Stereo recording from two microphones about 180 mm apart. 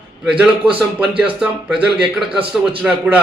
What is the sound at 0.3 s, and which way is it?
A man's voice, 10° right (ahead or behind).